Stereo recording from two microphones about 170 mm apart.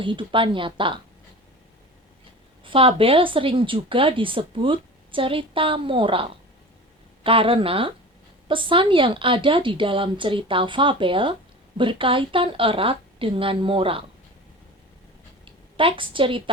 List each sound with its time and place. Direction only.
0.0 s a woman's voice: 30° right (ahead or behind)
2.6 s a woman's voice: 30° right (ahead or behind)
15.4 s a woman's voice: 30° right (ahead or behind)